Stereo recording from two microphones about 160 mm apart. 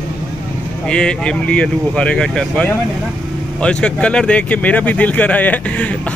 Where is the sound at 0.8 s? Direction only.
5° left (ahead or behind).